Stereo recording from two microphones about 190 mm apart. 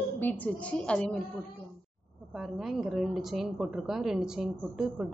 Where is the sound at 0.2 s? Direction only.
10° left (ahead or behind).